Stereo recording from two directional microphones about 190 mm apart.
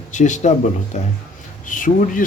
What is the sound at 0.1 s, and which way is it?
Speech, 40° left (ahead or behind).